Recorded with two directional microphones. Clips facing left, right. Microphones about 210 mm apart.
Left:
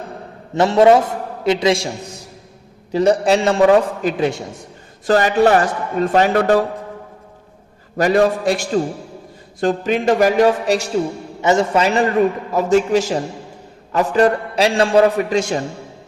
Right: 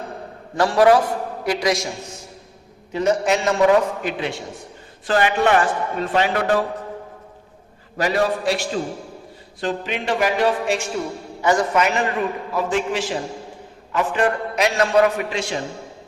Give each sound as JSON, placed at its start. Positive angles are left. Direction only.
{"t": 0.5, "sound": "a man's voice", "side_deg": 25}
{"t": 2.9, "sound": "a man's voice", "side_deg": 35}
{"t": 7.9, "sound": "a man's voice", "side_deg": 45}
{"t": 11.4, "sound": "a man's voice", "side_deg": 25}
{"t": 12.5, "sound": "a man's voice", "side_deg": 40}